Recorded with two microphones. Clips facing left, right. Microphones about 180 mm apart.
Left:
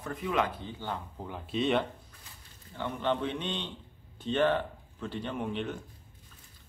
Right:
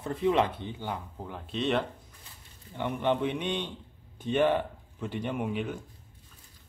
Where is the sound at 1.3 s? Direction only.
Centre (ahead or behind).